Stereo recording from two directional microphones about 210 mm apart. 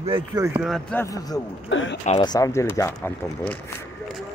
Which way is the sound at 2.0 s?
25° left (ahead or behind).